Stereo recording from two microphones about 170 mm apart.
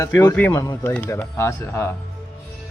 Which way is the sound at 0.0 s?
15° left (ahead or behind).